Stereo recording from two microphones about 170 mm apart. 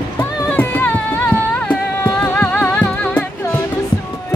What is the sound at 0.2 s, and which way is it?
Music, 10° left (ahead or behind).